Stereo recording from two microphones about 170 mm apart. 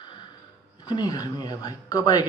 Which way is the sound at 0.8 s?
25° left (ahead or behind).